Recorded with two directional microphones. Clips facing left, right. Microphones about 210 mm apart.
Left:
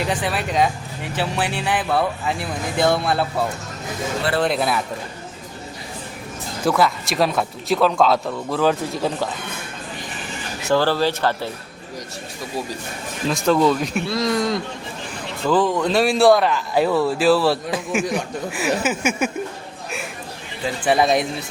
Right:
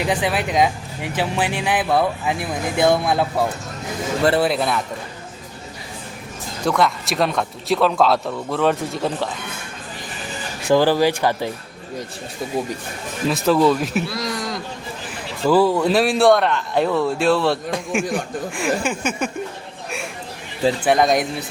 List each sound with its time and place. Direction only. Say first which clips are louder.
0.0 s speech: right 2 dB; 15° right (ahead or behind)
4.4 s speech: right 1 dB; centre (ahead or behind)
6.7 s speech: even; 5° left (ahead or behind)
10.7 s speech: right 3 dB; 15° right (ahead or behind)
13.2 s speech: right 1 dB; 5° right (ahead or behind)
14.1 s speech: left 6 dB; 25° left (ahead or behind)
15.4 s speech: right 3 dB; 10° right (ahead or behind)
20.9 s speech: left 1 dB; 5° left (ahead or behind)